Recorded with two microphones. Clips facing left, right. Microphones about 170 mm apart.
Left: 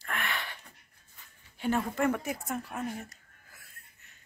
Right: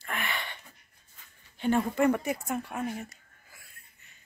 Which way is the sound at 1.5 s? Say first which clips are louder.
Right 4 dB; centre (ahead or behind).